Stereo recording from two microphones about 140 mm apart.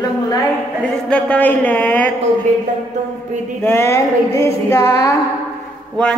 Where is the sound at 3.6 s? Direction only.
15° left (ahead or behind).